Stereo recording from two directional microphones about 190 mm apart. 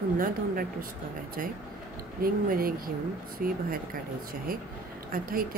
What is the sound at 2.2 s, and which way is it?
A woman's voice, 50° right (ahead or behind).